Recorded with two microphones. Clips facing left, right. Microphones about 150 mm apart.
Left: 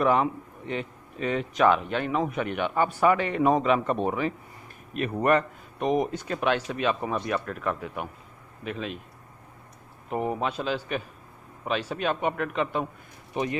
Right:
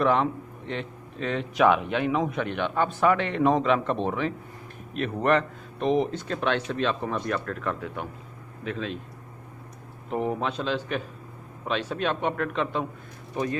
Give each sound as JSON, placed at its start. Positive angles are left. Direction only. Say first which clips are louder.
{"t": 0.0, "sound": "a man's voice", "louder": "even", "side_deg": 5}
{"t": 10.0, "sound": "a man's voice", "louder": "right 1 dB", "side_deg": 5}
{"t": 13.3, "sound": "speech", "louder": "even", "side_deg": 15}